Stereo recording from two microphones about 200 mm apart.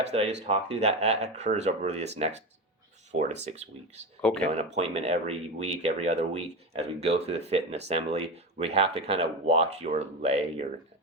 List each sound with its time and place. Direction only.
0.0 s speech: 35° right (ahead or behind)
4.2 s speech: 5° left (ahead or behind)
4.5 s speech: 30° right (ahead or behind)